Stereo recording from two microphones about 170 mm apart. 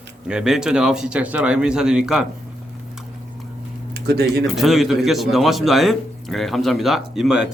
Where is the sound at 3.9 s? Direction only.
75° right (ahead or behind).